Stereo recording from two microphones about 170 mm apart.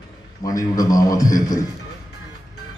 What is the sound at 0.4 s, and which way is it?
A man's voice, 20° left (ahead or behind).